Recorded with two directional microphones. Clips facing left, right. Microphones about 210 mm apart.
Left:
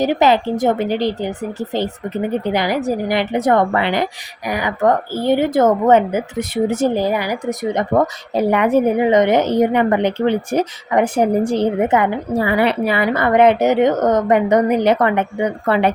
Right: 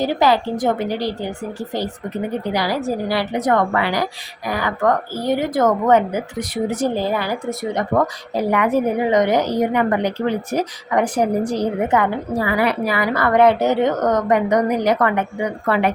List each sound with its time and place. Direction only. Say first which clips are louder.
0.0 s a woman's voice: left 3 dB; 20° left (ahead or behind)